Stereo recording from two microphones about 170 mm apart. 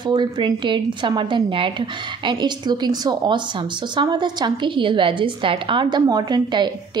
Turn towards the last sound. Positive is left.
turn(degrees=-25)  # may be behind; listen again after turning